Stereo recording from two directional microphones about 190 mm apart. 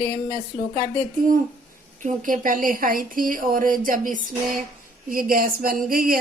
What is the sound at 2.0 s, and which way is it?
A woman's voice, 45° right (ahead or behind).